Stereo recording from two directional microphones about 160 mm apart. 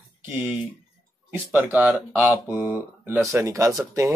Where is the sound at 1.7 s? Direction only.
10° right (ahead or behind).